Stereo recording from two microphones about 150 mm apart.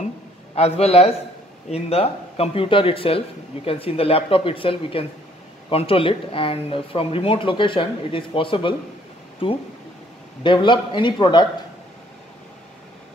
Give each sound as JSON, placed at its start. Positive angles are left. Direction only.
{"t": 0.6, "sound": "a man's voice", "side_deg": 45}
{"t": 10.4, "sound": "speech", "side_deg": 35}